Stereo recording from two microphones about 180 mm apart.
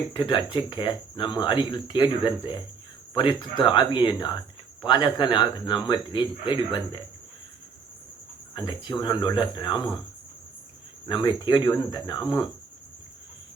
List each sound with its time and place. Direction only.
0.1 s speech: 25° left (ahead or behind)
8.5 s speech: 25° left (ahead or behind)
11.1 s speech: 25° left (ahead or behind)